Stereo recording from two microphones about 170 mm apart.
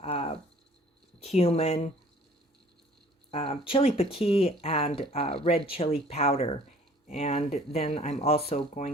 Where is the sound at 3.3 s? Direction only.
35° left (ahead or behind).